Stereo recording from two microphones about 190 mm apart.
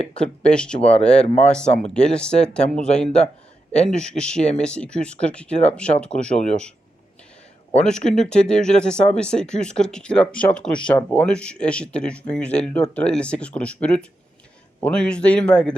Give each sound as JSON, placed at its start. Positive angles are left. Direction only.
{"t": 0.1, "sound": "speech", "side_deg": 5}
{"t": 7.9, "sound": "speech", "side_deg": 5}